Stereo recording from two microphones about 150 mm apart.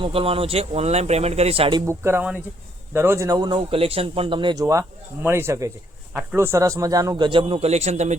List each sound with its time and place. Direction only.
0.0 s speech: 40° right (ahead or behind)
1.9 s a man's voice: 15° right (ahead or behind); by 4.5 s 35° right (ahead or behind)
4.5 s a man's voice: 20° right (ahead or behind); by 8.1 s 45° right (ahead or behind)